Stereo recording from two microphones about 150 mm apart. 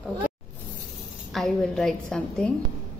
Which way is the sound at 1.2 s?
Centre (ahead or behind).